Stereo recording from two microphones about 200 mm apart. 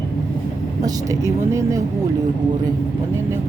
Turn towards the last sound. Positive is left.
turn(degrees=-15)  # may be behind; listen again after turning